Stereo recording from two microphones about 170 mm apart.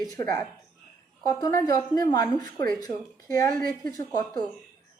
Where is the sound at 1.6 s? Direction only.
20° left (ahead or behind).